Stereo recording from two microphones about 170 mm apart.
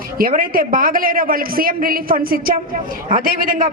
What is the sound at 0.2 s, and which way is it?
A woman's voice, 55° right (ahead or behind).